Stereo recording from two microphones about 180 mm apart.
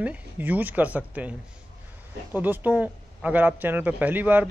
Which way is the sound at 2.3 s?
10° right (ahead or behind).